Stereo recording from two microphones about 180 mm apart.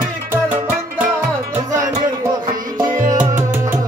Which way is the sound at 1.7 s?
45° right (ahead or behind).